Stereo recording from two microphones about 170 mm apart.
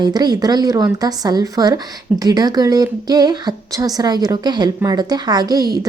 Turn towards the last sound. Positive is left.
turn(degrees=-20)  # may be behind; listen again after turning